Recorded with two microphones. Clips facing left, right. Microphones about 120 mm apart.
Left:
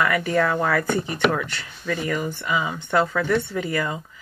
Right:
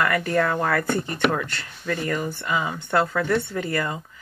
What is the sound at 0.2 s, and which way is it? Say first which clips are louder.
Speech: left 1 dB; 10° left (ahead or behind).